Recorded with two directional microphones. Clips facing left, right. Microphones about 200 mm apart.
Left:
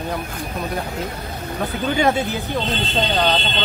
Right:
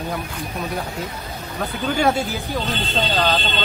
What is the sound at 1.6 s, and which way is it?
Speech, 5° left (ahead or behind).